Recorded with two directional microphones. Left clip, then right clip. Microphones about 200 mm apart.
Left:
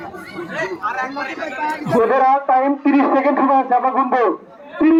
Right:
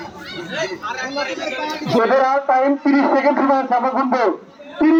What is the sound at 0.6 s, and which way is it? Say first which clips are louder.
Speech: left 3 dB; 55° left (ahead or behind).